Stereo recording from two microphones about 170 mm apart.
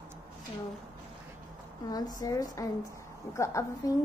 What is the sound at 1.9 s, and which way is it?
A woman's voice, 20° left (ahead or behind).